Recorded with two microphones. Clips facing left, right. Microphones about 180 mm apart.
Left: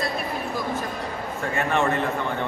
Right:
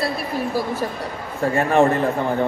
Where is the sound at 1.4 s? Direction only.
35° right (ahead or behind).